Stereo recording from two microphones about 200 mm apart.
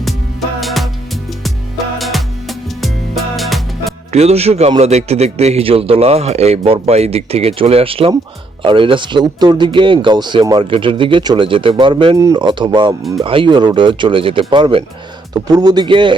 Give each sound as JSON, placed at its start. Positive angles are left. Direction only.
{"t": 0.6, "sound": "music", "side_deg": 0}
{"t": 2.0, "sound": "music", "side_deg": 0}
{"t": 4.1, "sound": "a man's voice", "side_deg": -30}